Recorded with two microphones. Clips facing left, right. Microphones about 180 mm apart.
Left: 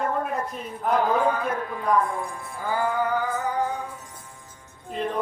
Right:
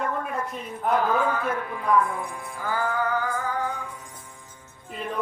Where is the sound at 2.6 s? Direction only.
15° left (ahead or behind).